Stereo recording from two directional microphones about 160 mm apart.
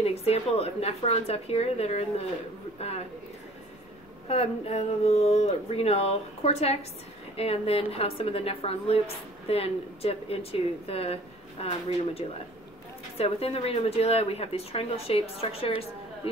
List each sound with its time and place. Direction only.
0.0 s a woman's voice: 40° left (ahead or behind)
4.3 s a woman's voice: 40° left (ahead or behind)